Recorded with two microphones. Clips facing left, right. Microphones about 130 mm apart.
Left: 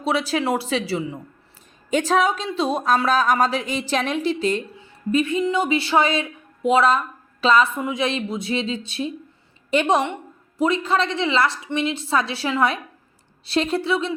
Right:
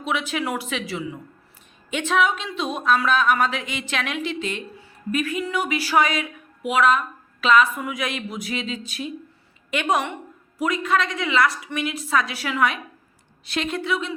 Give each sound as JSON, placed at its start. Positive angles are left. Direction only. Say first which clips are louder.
{"t": 0.0, "sound": "a woman's voice", "louder": "left 4 dB", "side_deg": 35}
{"t": 5.1, "sound": "a woman's voice", "louder": "left 5 dB", "side_deg": 25}